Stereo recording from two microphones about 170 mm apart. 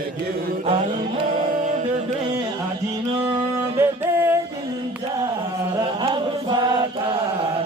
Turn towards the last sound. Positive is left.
turn(degrees=-25)  # may be behind; listen again after turning